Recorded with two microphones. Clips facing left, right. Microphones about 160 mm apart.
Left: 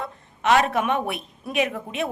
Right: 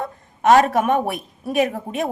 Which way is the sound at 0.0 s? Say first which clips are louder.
Right 6 dB; 45° right (ahead or behind).